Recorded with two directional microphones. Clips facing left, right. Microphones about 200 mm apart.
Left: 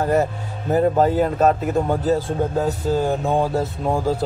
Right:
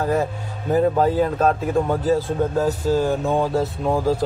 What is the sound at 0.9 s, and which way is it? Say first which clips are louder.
Speech: left 1 dB; 5° left (ahead or behind).